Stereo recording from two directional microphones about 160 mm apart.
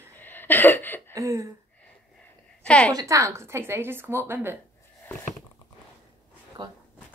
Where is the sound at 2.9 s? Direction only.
20° right (ahead or behind).